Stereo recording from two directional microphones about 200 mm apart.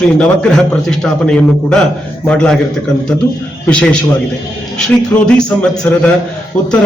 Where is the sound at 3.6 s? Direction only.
5° left (ahead or behind).